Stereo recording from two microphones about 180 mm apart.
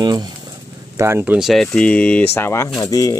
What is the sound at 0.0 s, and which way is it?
Speech, 25° right (ahead or behind).